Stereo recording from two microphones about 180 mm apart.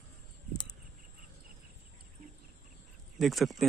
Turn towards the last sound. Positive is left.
turn(degrees=0)  # may be behind; listen again after turning